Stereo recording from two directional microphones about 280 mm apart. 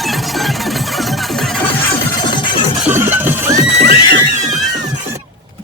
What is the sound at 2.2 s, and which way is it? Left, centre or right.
Music, centre.